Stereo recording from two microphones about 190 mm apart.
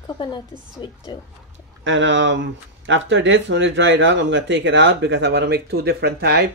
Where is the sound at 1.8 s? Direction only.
75° right (ahead or behind); by 6.5 s 60° right (ahead or behind).